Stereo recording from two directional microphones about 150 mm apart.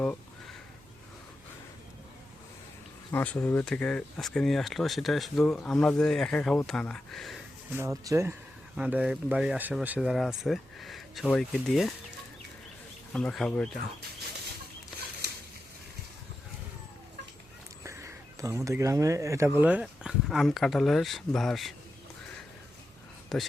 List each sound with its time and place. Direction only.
0.0 s a sound: 10° left (ahead or behind)
3.1 s speech: 15° left (ahead or behind)
7.7 s speech: 20° right (ahead or behind)
8.7 s speech: 10° right (ahead or behind)
13.1 s speech: 5° left (ahead or behind)
17.8 s speech: 20° right (ahead or behind); by 21.8 s centre (ahead or behind)
23.3 s speech: centre (ahead or behind)